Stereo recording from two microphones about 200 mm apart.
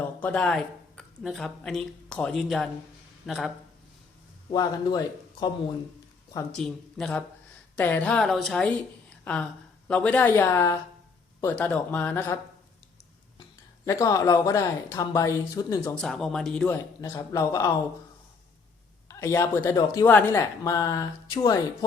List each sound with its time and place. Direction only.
0.2 s a woman's voice: 5° left (ahead or behind)
4.5 s speech: 20° left (ahead or behind)
6.5 s a woman's voice: 5° left (ahead or behind)
13.8 s speech: 15° left (ahead or behind)
16.0 s a woman's voice: centre (ahead or behind)
17.0 s speech: 15° left (ahead or behind)
19.0 s speech: 15° left (ahead or behind)